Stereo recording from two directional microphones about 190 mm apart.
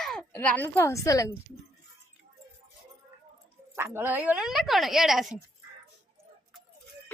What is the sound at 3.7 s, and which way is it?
A woman's voice, 10° right (ahead or behind).